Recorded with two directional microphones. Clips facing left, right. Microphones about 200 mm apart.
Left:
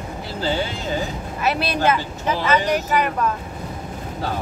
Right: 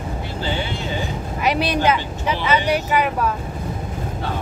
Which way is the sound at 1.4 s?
15° right (ahead or behind).